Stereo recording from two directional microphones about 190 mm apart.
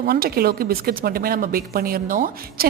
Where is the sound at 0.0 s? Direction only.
50° right (ahead or behind).